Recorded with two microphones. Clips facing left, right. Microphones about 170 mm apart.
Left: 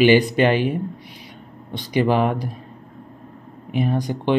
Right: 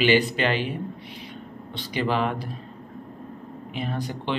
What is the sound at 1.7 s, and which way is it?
Speech, 15° left (ahead or behind).